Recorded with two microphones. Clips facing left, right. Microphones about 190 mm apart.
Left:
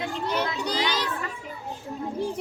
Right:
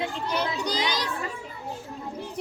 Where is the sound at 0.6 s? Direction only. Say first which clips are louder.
Left 1 dB; 10° right (ahead or behind).